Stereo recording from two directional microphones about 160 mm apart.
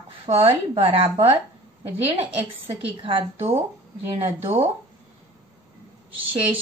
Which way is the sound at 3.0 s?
30° right (ahead or behind).